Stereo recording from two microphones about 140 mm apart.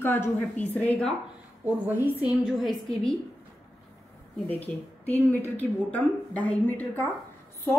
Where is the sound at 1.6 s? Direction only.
10° right (ahead or behind).